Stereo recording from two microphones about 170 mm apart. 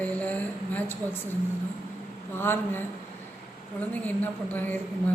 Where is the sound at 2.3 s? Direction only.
15° left (ahead or behind).